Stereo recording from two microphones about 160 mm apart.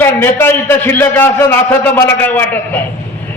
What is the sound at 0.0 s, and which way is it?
A man's voice, 15° left (ahead or behind).